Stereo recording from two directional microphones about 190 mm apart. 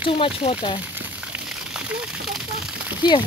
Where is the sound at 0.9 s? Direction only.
5° right (ahead or behind).